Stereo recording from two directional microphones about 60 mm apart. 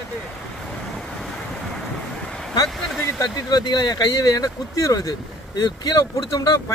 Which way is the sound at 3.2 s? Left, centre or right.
Left.